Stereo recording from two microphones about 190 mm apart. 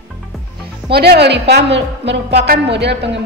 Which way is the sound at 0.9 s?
60° right (ahead or behind).